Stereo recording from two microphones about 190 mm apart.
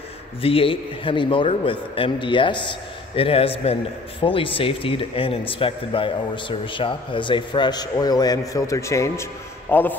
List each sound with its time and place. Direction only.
0.4 s a man's voice: 30° left (ahead or behind); by 9.9 s 10° left (ahead or behind)